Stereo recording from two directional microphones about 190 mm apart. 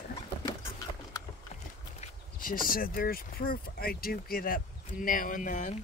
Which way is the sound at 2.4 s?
45° left (ahead or behind).